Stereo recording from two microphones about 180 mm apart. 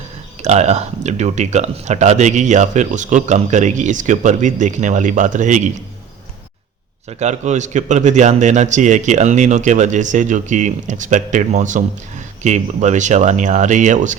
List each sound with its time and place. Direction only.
0.4 s speech: 40° right (ahead or behind)
7.1 s speech: 40° right (ahead or behind)